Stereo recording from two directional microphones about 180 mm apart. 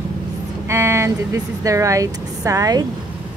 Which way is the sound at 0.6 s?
15° right (ahead or behind).